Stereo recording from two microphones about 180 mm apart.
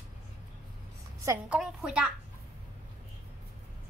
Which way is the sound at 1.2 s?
15° right (ahead or behind).